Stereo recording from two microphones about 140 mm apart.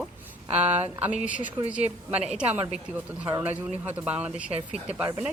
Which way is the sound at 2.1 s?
10° right (ahead or behind).